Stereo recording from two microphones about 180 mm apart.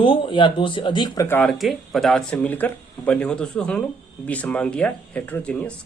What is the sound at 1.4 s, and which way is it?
Speech, centre (ahead or behind).